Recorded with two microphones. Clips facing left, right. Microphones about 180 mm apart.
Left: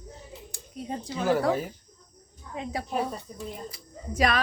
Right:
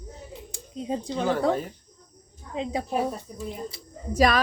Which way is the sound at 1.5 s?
Centre (ahead or behind).